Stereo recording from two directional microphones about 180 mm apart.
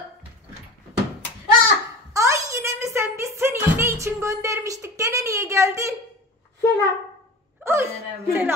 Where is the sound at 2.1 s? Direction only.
15° right (ahead or behind).